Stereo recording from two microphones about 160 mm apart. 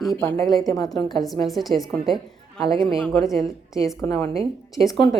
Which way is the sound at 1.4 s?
Centre (ahead or behind).